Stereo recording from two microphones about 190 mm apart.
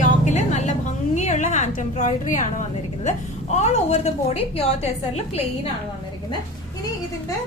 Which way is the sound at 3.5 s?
35° left (ahead or behind).